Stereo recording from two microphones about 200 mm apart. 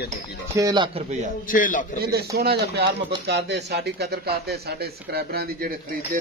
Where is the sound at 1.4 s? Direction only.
45° left (ahead or behind).